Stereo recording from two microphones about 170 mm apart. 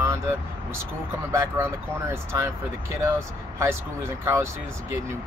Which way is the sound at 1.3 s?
15° right (ahead or behind).